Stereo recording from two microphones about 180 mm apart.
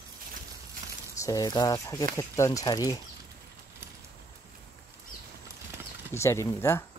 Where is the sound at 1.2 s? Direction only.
20° left (ahead or behind).